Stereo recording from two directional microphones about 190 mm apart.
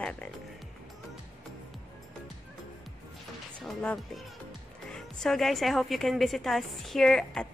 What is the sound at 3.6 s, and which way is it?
Speech, 5° left (ahead or behind).